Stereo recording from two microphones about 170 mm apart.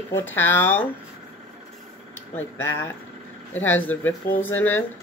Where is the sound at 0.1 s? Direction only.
10° left (ahead or behind).